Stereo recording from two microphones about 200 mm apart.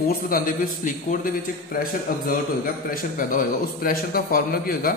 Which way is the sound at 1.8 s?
45° left (ahead or behind).